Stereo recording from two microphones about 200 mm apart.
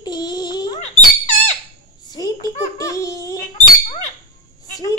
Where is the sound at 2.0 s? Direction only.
20° left (ahead or behind).